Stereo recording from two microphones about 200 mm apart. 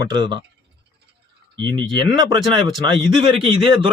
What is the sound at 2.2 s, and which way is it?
Speech, 20° right (ahead or behind).